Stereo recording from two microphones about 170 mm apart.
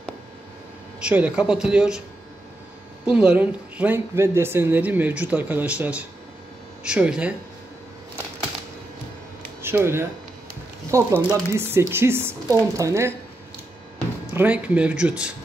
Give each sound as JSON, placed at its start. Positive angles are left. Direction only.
{"t": 1.0, "sound": "speech", "side_deg": -5}
{"t": 3.1, "sound": "speech", "side_deg": -5}
{"t": 9.6, "sound": "speech", "side_deg": -15}
{"t": 14.3, "sound": "speech", "side_deg": -10}